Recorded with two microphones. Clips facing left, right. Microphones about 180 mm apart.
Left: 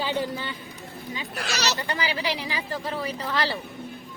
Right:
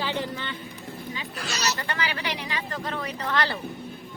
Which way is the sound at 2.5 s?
10° left (ahead or behind).